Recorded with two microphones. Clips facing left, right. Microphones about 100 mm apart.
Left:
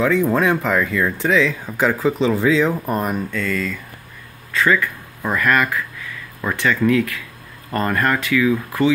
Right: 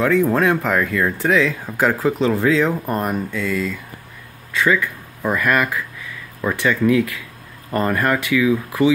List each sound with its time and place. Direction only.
0.0 s speech: centre (ahead or behind)
3.3 s speech: 10° right (ahead or behind)
4.6 s a sound: 5° right (ahead or behind)
5.3 s speech: 20° right (ahead or behind)